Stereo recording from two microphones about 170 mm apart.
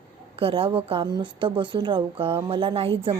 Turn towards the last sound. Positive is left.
turn(degrees=-35)  # may be behind; listen again after turning